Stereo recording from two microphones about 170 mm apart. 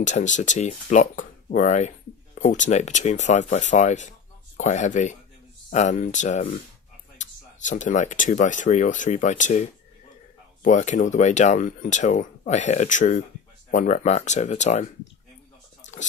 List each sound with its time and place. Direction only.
0.0 s speech: 45° left (ahead or behind)